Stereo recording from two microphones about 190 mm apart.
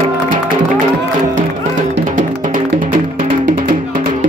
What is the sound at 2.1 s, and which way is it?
Music, 40° right (ahead or behind).